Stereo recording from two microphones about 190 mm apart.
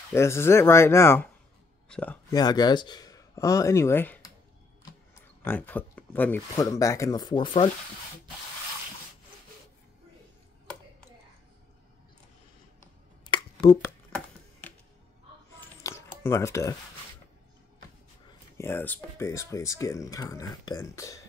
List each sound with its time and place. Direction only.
0.1 s speech: 15° left (ahead or behind)
2.3 s speech: 20° left (ahead or behind)
5.4 s speech: 10° left (ahead or behind); by 7.7 s 25° left (ahead or behind)
13.3 s a sound: 20° left (ahead or behind)
15.8 s a sound: 15° left (ahead or behind)
18.6 s speech: 10° left (ahead or behind)